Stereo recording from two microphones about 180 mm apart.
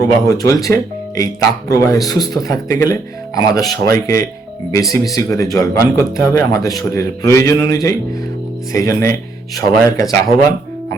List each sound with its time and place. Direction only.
0.0 s speech: 20° left (ahead or behind)